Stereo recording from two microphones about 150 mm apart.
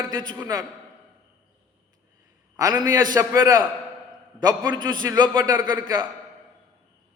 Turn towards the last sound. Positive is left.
turn(degrees=-30)  # may be behind; listen again after turning